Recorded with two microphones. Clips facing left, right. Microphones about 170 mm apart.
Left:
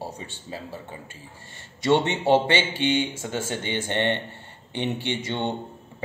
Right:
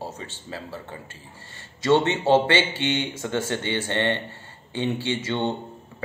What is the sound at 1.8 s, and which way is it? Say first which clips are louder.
Speech: right 1 dB; 15° left (ahead or behind).